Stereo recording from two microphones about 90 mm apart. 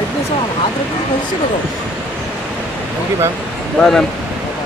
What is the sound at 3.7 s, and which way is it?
Speech, 5° left (ahead or behind).